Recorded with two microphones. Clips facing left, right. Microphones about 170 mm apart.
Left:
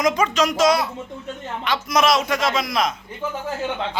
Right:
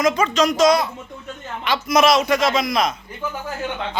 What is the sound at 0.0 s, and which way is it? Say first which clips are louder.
A man's voice: right 1 dB; 15° left (ahead or behind).